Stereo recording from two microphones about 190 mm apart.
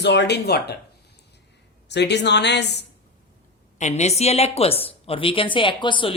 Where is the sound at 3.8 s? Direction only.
40° left (ahead or behind).